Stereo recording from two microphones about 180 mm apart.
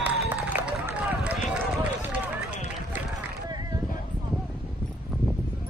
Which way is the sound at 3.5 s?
20° right (ahead or behind).